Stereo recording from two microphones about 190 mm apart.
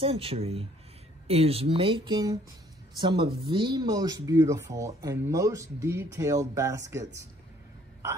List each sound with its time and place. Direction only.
0.0 s speech: 30° right (ahead or behind)